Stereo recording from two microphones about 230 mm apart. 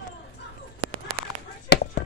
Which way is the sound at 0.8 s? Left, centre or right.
Right.